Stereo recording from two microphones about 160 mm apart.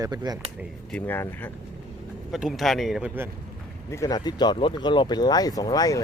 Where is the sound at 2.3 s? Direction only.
Centre (ahead or behind).